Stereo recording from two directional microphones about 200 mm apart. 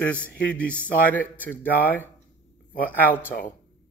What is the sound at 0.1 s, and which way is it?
A man's voice, 5° left (ahead or behind).